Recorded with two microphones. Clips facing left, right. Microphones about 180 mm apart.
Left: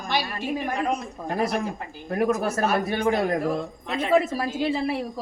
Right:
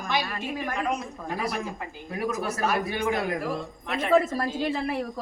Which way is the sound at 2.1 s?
50° left (ahead or behind).